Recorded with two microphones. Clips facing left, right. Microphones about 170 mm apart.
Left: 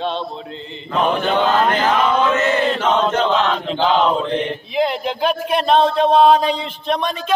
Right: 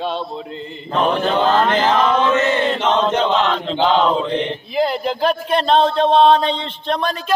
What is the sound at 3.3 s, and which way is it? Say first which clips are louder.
Chant: even; 10° left (ahead or behind).